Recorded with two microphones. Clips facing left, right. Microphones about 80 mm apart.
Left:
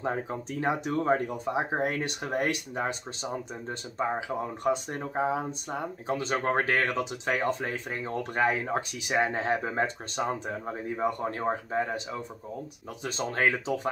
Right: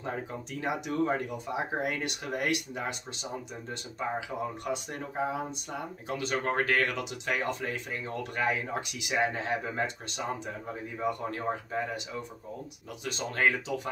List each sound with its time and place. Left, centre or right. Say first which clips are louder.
0.0 s speech: left 5 dB; left